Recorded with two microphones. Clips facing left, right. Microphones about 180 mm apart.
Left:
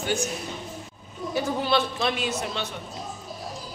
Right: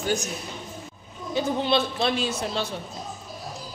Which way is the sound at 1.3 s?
25° right (ahead or behind).